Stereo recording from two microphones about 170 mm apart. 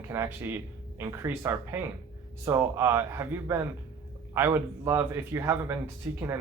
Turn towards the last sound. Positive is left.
turn(degrees=-15)  # may be behind; listen again after turning